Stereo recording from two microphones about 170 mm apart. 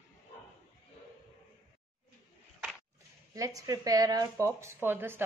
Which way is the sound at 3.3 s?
20° right (ahead or behind).